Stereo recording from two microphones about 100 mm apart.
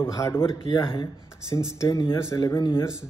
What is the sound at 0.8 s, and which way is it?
Speech, 60° left (ahead or behind).